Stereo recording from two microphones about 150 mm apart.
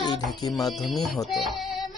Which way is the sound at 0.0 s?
25° left (ahead or behind).